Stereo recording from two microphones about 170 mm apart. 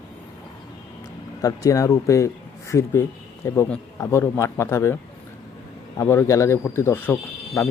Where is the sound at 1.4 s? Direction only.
20° left (ahead or behind).